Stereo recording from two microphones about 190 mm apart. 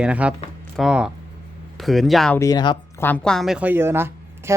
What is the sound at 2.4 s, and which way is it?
Speech, 20° left (ahead or behind).